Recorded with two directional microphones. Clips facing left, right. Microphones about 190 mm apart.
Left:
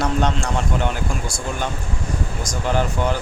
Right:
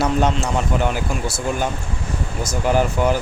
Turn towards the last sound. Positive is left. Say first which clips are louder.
# right 3 dB
turn(degrees=-10)  # may be behind; listen again after turning